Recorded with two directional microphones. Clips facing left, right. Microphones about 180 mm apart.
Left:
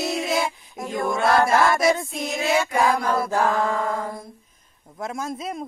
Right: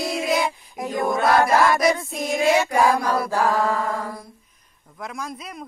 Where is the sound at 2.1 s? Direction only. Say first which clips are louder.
Right 3 dB; 50° right (ahead or behind).